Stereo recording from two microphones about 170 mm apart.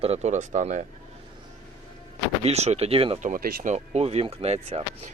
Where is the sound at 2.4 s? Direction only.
40° right (ahead or behind).